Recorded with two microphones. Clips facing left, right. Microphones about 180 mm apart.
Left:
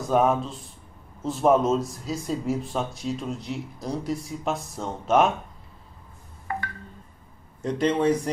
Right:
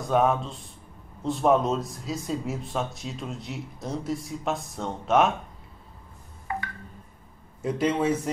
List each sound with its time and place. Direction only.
0.0 s speech: centre (ahead or behind)
7.6 s speech: 5° right (ahead or behind)